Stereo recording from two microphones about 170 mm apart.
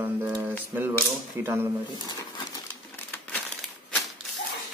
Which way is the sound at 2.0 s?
25° left (ahead or behind).